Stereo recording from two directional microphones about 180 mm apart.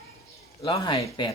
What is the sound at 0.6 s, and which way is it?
Speech, 35° left (ahead or behind).